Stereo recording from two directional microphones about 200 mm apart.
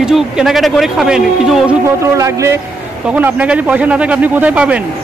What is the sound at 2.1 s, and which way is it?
A man's voice, 15° right (ahead or behind).